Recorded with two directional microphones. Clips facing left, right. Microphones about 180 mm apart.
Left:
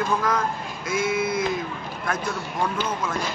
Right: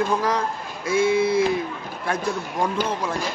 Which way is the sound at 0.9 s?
30° right (ahead or behind).